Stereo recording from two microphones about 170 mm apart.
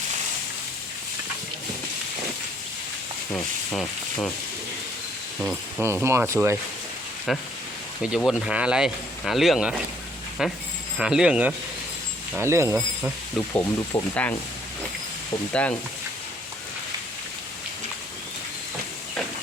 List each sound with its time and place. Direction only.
3.3 s speech: 5° left (ahead or behind)
5.4 s speech: 5° right (ahead or behind)
7.3 s speech: centre (ahead or behind); by 12.7 s 15° right (ahead or behind)
12.7 s speech: 5° right (ahead or behind)
13.5 s speech: 10° left (ahead or behind)